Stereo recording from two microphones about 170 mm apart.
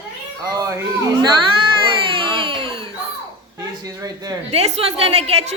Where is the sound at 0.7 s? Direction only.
20° right (ahead or behind).